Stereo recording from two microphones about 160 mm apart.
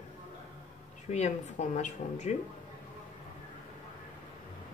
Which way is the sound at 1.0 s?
45° left (ahead or behind).